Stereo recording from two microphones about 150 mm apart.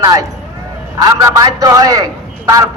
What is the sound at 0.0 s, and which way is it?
Speech, 20° right (ahead or behind).